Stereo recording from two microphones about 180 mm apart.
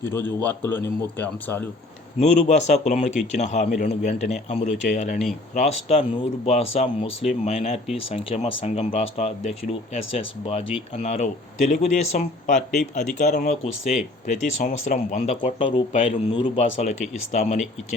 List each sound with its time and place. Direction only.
0.0 s speech: 15° left (ahead or behind)
2.1 s speech: 40° left (ahead or behind)